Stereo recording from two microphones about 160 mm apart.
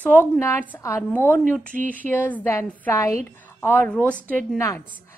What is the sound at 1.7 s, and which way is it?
Speech, 55° right (ahead or behind).